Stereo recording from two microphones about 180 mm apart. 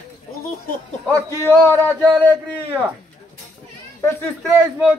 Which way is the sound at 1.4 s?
15° left (ahead or behind).